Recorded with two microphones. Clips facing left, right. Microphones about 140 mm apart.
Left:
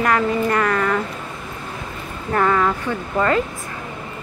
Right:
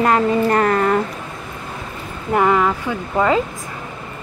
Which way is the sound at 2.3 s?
15° right (ahead or behind).